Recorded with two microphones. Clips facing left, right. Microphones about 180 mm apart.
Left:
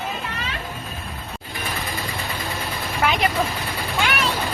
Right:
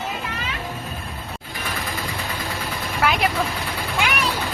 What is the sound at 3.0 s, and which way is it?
Vehicle, 5° right (ahead or behind).